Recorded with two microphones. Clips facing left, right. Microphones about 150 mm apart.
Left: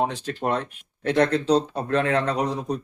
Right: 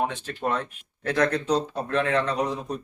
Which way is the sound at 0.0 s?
30° left (ahead or behind).